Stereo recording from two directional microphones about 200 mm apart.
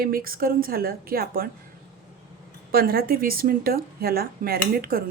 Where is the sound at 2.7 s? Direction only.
50° right (ahead or behind).